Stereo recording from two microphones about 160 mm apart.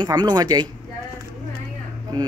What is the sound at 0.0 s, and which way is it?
Speech, 25° right (ahead or behind).